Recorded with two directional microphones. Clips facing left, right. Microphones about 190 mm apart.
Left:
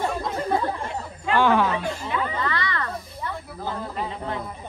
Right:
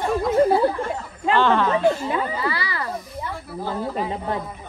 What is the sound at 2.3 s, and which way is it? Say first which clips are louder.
Speech: right 2 dB; 10° right (ahead or behind).